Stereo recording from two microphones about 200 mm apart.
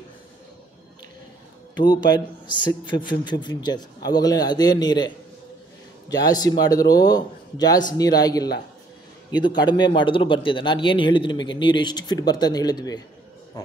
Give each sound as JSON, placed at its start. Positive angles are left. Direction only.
{"t": 1.8, "sound": "a man's voice", "side_deg": 20}